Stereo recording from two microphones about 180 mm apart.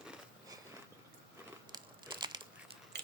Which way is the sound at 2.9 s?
70° right (ahead or behind).